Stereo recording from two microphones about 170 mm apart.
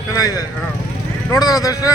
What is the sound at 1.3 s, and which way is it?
Speech, 20° left (ahead or behind).